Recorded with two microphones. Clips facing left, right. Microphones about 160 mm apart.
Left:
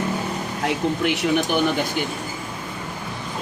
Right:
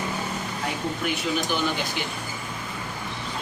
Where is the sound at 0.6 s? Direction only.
75° left (ahead or behind).